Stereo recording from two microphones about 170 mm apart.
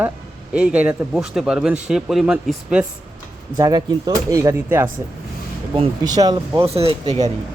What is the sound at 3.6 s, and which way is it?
Speech, 20° right (ahead or behind).